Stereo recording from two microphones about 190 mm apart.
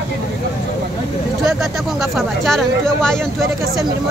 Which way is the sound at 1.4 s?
Centre (ahead or behind).